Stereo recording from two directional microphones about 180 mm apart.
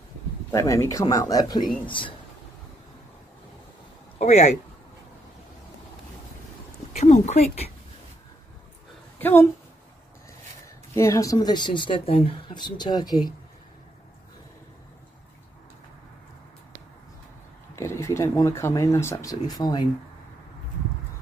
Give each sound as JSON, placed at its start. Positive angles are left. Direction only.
{"t": 0.5, "sound": "speech", "side_deg": 20}
{"t": 4.2, "sound": "speech", "side_deg": 35}
{"t": 6.9, "sound": "speech", "side_deg": 40}
{"t": 9.2, "sound": "a woman's voice", "side_deg": 10}
{"t": 11.0, "sound": "speech", "side_deg": 20}
{"t": 17.7, "sound": "speech", "side_deg": 15}